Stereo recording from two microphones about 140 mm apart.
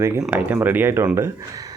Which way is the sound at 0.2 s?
10° right (ahead or behind).